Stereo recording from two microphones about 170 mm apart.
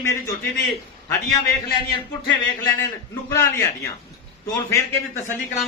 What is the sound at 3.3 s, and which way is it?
Speech, 15° left (ahead or behind).